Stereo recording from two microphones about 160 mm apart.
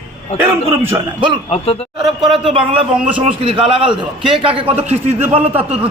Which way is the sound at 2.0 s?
Centre (ahead or behind).